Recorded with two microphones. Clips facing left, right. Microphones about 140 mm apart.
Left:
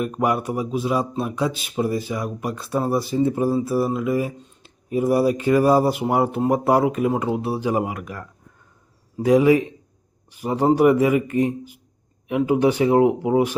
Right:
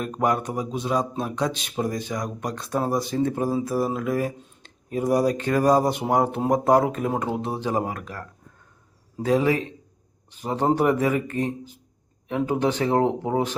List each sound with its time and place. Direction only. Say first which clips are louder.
0.0 s speech: left 2 dB; 10° left (ahead or behind)